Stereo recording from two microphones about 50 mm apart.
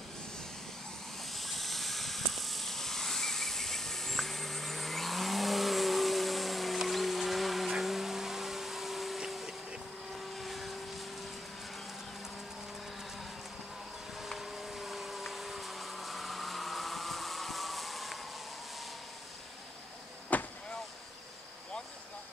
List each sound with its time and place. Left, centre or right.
1.3 s vehicle: centre
7.7 s blender: centre
10.3 s vehicle: centre
14.3 s a sound: centre
20.3 s vehicle: left